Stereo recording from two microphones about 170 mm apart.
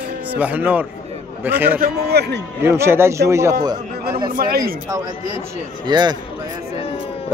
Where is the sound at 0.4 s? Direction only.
10° right (ahead or behind).